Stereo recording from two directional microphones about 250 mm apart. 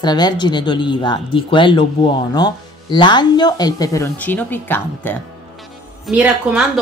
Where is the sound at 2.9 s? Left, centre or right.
Centre.